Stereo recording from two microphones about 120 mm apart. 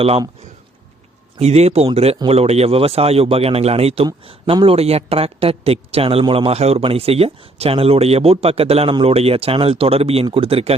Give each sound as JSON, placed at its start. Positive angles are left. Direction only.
{"t": 1.4, "sound": "speech", "side_deg": -65}